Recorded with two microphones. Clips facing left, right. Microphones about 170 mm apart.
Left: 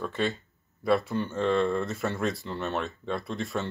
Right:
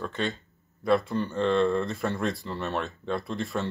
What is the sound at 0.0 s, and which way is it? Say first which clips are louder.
Speech: left 1 dB; 5° left (ahead or behind).